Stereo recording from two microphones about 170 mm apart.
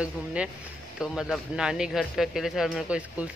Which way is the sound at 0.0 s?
5° right (ahead or behind).